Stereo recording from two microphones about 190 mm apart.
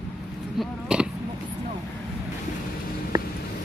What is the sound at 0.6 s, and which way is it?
Speech, 5° right (ahead or behind).